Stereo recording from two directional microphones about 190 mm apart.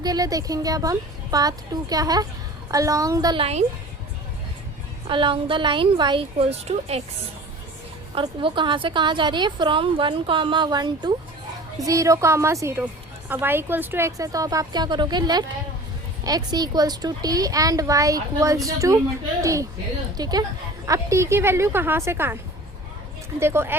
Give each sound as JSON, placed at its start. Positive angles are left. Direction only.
{"t": 0.0, "sound": "a woman's voice", "side_deg": -20}
{"t": 5.0, "sound": "a woman's voice", "side_deg": -25}
{"t": 8.1, "sound": "a woman's voice", "side_deg": -25}
{"t": 23.4, "sound": "a woman's voice", "side_deg": -10}